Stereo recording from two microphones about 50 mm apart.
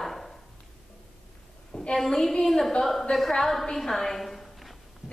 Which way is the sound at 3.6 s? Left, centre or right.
Centre.